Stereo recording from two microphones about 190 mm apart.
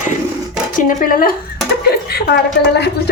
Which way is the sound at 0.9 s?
45° left (ahead or behind).